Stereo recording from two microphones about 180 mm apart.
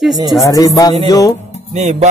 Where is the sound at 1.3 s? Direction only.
35° left (ahead or behind).